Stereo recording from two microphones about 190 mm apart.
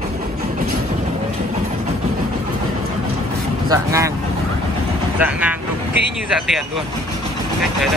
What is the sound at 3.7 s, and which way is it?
Speech, 15° right (ahead or behind).